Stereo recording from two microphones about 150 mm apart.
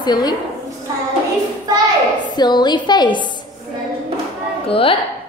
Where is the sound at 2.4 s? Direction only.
30° left (ahead or behind).